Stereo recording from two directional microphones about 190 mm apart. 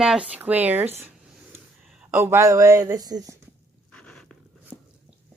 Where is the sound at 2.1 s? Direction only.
15° right (ahead or behind).